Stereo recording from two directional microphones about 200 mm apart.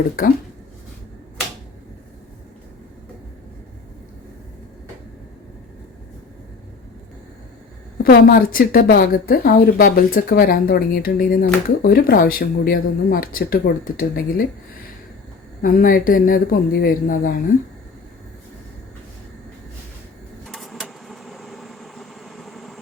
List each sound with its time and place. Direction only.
7.9 s a woman's voice: 50° left (ahead or behind)
20.5 s vehicle: centre (ahead or behind)